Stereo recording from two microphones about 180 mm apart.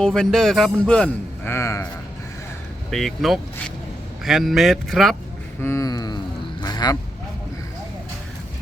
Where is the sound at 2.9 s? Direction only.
Centre (ahead or behind).